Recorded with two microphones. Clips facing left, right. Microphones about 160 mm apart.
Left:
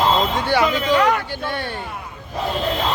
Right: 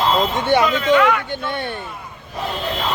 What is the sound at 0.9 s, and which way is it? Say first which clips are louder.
Speech: right 1 dB; 40° left (ahead or behind).